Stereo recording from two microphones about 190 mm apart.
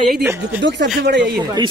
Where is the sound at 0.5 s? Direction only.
70° right (ahead or behind).